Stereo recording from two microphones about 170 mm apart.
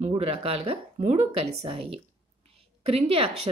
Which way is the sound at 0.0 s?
35° right (ahead or behind).